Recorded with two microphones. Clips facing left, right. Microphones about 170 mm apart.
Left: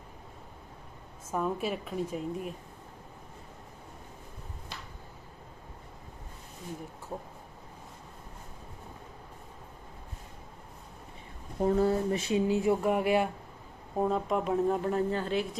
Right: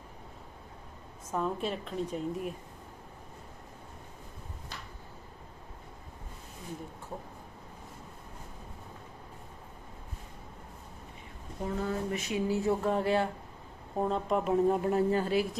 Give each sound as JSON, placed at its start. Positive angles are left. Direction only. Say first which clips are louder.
{"t": 1.3, "sound": "a woman's voice", "louder": "left 1 dB", "side_deg": 5}
{"t": 11.6, "sound": "speech", "louder": "left 7 dB", "side_deg": 35}
{"t": 12.5, "sound": "a woman's voice", "louder": "left 1 dB", "side_deg": 15}
{"t": 13.9, "sound": "a woman's voice", "louder": "left 1 dB", "side_deg": 0}